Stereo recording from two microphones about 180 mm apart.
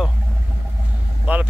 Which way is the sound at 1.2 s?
10° right (ahead or behind).